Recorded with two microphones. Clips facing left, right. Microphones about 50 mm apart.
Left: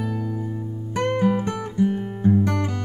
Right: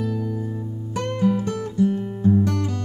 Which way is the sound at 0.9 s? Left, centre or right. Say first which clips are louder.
Left 1 dB; left.